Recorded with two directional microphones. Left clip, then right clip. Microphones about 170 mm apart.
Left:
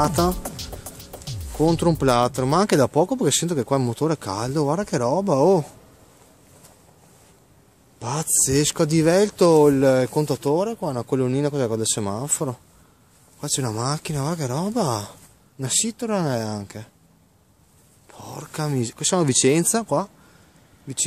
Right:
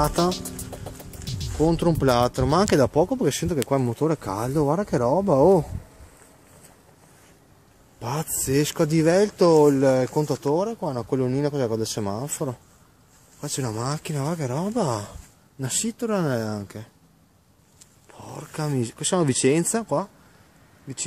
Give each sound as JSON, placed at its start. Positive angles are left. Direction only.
{"t": 0.0, "sound": "speech", "side_deg": 10}
{"t": 1.6, "sound": "speech", "side_deg": 10}
{"t": 8.0, "sound": "speech", "side_deg": 10}
{"t": 18.0, "sound": "speech", "side_deg": 10}